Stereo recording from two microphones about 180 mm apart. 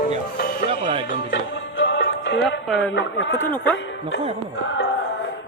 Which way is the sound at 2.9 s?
90° left.